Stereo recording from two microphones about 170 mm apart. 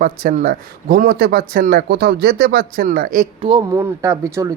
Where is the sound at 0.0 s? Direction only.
50° right (ahead or behind).